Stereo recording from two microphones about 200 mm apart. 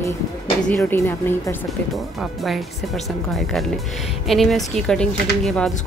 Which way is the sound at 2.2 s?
Centre (ahead or behind).